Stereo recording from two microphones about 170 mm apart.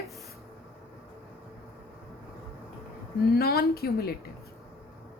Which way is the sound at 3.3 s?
65° left (ahead or behind).